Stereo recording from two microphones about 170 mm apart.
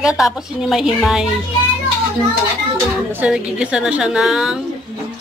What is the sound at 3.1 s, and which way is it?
A woman's voice, 5° right (ahead or behind).